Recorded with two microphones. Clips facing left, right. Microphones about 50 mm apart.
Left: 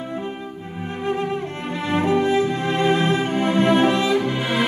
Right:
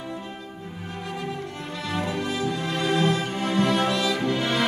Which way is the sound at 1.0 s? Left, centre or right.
Left.